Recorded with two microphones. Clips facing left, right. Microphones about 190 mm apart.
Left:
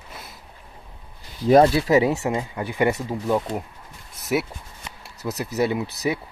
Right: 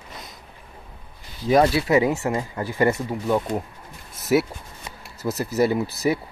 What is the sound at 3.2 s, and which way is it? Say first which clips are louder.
Speech: right 1 dB; 5° left (ahead or behind).